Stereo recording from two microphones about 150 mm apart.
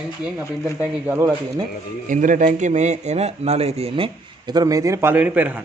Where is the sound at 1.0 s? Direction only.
15° right (ahead or behind).